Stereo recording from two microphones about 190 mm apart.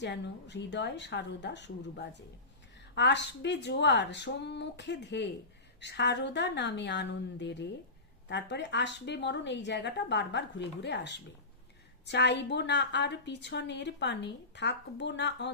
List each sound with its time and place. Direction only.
0.0 s a woman's voice: 65° left (ahead or behind)